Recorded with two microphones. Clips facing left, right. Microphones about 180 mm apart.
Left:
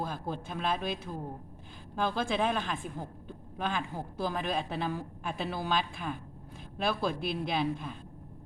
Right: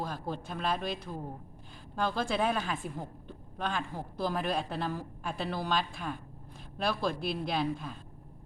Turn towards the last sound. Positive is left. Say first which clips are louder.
# left 1 dB
turn(degrees=0)  # may be behind; listen again after turning